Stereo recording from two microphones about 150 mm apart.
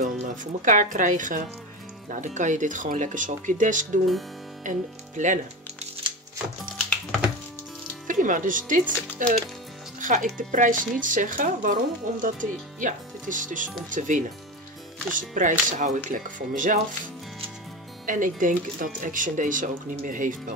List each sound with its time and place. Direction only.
0.0 s speech: 55° right (ahead or behind)
8.1 s speech: 60° right (ahead or behind)
18.0 s speech: 60° right (ahead or behind)